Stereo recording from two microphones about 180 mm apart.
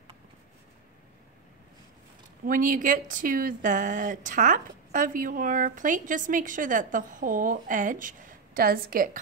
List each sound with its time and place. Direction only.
2.4 s speech: 50° right (ahead or behind)